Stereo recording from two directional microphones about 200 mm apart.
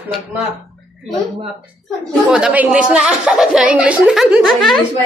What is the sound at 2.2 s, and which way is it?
A woman's voice, 5° right (ahead or behind).